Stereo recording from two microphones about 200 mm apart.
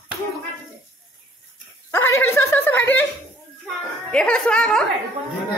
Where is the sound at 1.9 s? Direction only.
10° left (ahead or behind).